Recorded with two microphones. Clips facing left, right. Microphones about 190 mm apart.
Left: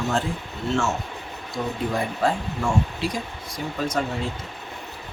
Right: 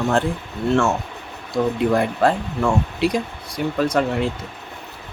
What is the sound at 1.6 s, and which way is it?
Speech, 70° right (ahead or behind).